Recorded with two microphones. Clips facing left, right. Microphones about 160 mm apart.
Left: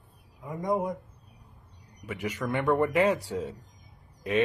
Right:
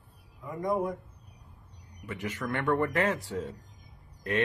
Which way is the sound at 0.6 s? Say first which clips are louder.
Left 1 dB; 20° left (ahead or behind).